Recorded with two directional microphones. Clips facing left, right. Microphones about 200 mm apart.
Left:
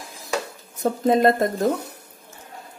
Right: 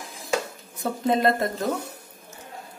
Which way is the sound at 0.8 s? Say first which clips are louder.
Left 5 dB; 45° left (ahead or behind).